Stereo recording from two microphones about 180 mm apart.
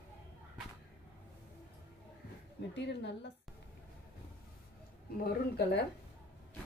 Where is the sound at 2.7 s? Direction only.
75° left (ahead or behind).